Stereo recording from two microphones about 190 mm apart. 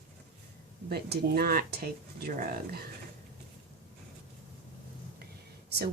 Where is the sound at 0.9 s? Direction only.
55° right (ahead or behind).